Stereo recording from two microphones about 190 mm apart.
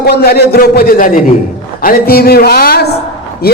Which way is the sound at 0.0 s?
55° left (ahead or behind).